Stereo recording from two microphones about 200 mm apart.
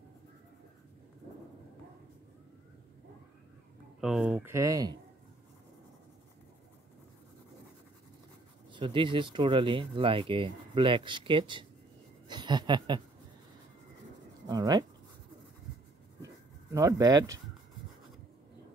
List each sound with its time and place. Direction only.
4.0 s speech: centre (ahead or behind); by 4.9 s 15° right (ahead or behind)
8.7 s speech: 25° right (ahead or behind)
14.5 s speech: 20° right (ahead or behind)
16.7 s speech: 15° right (ahead or behind)